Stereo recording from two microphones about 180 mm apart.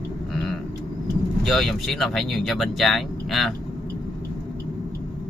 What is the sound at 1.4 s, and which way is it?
Speech, centre (ahead or behind).